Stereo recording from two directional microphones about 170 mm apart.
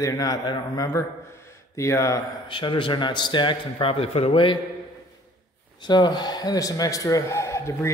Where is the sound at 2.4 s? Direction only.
30° left (ahead or behind).